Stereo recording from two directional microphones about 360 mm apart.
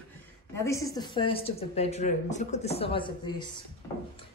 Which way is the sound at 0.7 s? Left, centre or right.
Centre.